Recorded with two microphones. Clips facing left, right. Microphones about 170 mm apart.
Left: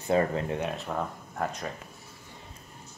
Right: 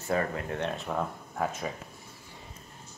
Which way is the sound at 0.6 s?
Centre (ahead or behind).